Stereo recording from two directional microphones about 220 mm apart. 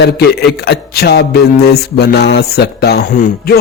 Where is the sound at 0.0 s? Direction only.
50° left (ahead or behind).